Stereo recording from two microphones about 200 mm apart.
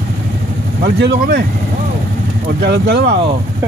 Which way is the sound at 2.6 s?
55° right (ahead or behind).